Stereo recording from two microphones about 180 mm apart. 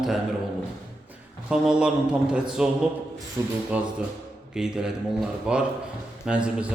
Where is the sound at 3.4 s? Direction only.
15° right (ahead or behind).